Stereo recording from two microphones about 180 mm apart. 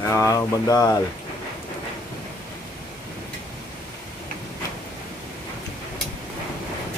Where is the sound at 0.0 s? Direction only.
15° left (ahead or behind).